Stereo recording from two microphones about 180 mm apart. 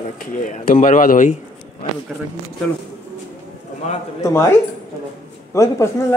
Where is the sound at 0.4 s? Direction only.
45° left (ahead or behind).